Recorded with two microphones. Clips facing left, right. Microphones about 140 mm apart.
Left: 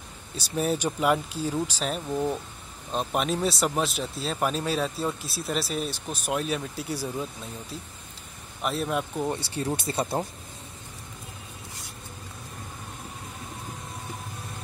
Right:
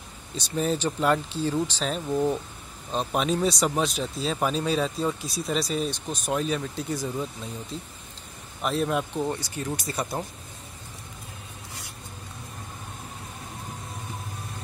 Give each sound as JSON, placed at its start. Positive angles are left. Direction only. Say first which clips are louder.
{"t": 0.4, "sound": "speech", "louder": "even", "side_deg": 10}
{"t": 9.4, "sound": "speech", "louder": "left 2 dB", "side_deg": 30}